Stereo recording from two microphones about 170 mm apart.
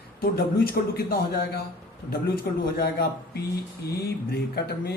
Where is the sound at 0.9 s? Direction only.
65° left (ahead or behind).